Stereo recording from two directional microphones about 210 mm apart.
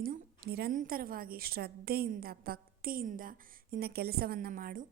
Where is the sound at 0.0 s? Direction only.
45° right (ahead or behind).